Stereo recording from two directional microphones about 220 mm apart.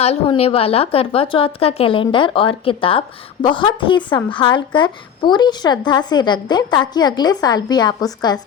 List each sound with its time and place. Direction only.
0.0 s a woman's voice: 25° left (ahead or behind)